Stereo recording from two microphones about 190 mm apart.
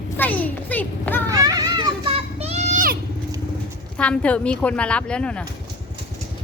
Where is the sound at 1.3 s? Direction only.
20° right (ahead or behind).